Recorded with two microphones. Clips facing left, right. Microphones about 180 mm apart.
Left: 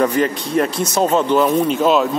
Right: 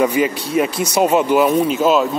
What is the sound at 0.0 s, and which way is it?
Speech, 10° right (ahead or behind).